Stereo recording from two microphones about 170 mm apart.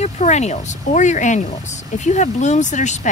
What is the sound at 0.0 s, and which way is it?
Speech, 40° left (ahead or behind).